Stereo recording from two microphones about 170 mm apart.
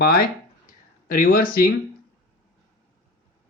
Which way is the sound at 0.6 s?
50° left (ahead or behind).